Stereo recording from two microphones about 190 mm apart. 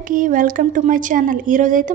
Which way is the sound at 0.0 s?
45° right (ahead or behind).